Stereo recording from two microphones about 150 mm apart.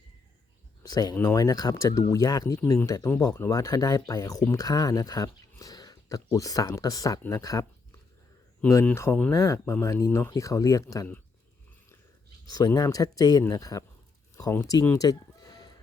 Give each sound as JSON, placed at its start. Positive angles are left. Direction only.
{"t": 0.8, "sound": "speech", "side_deg": 25}
{"t": 8.6, "sound": "speech", "side_deg": 10}
{"t": 12.5, "sound": "speech", "side_deg": 25}
{"t": 14.3, "sound": "a sound", "side_deg": 20}